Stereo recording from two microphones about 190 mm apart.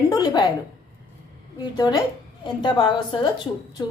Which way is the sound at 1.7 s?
20° left (ahead or behind).